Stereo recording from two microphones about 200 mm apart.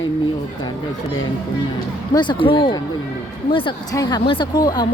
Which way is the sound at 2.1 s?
25° left (ahead or behind).